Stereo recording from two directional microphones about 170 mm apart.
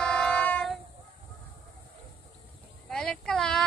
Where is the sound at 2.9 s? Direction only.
5° left (ahead or behind).